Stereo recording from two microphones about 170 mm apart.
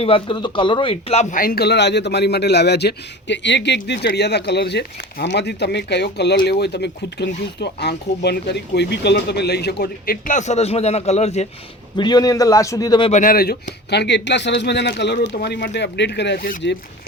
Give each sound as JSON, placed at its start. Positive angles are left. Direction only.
{"t": 0.0, "sound": "speech", "side_deg": 30}
{"t": 3.8, "sound": "speech", "side_deg": 75}
{"t": 11.9, "sound": "a man's voice", "side_deg": 25}
{"t": 13.1, "sound": "speech", "side_deg": 50}